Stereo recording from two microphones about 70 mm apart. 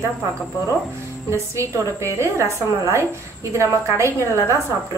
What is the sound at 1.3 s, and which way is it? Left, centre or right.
A woman's voice, right.